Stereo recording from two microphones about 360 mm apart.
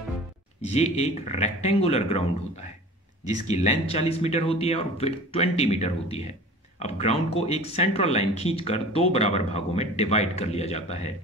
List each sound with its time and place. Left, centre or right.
0.7 s speech: centre
3.4 s speech: centre